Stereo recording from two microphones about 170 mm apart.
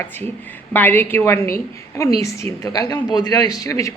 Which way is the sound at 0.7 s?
10° left (ahead or behind).